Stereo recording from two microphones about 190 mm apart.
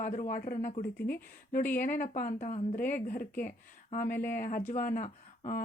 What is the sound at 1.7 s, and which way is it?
Speech, 45° left (ahead or behind).